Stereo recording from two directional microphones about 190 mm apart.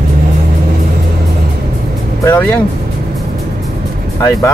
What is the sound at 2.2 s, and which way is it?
Speech, 10° left (ahead or behind).